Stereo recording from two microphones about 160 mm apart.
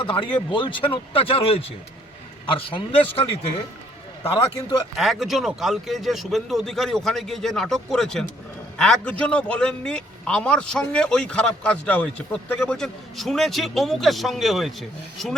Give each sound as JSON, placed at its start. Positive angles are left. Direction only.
{"t": 0.0, "sound": "a man's voice", "side_deg": 30}
{"t": 4.9, "sound": "a man's voice", "side_deg": 0}